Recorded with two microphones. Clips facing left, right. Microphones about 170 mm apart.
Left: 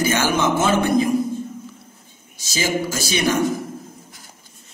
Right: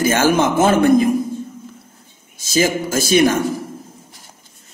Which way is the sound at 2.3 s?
50° right (ahead or behind).